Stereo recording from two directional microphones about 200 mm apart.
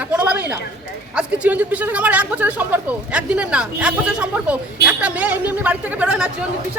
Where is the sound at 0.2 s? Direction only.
5° right (ahead or behind).